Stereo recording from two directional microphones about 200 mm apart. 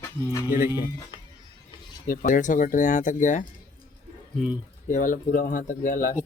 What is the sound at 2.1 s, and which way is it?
Speech, 45° left (ahead or behind).